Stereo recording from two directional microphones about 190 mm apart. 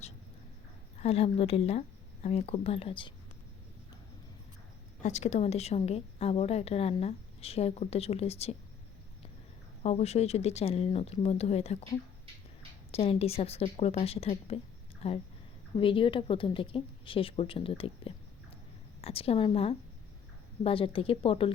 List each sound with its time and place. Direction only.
0.9 s a woman's voice: 30° left (ahead or behind)
5.0 s a woman's voice: 35° left (ahead or behind)
9.8 s a woman's voice: 35° left (ahead or behind)
12.9 s a woman's voice: 30° left (ahead or behind)